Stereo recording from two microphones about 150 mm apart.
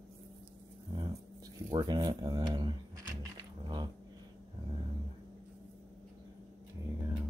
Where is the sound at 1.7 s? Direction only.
25° right (ahead or behind).